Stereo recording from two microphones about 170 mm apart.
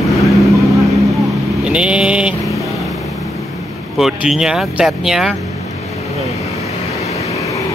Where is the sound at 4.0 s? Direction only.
5° right (ahead or behind).